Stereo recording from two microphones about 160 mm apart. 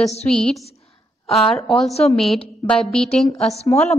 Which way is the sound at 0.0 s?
45° left (ahead or behind).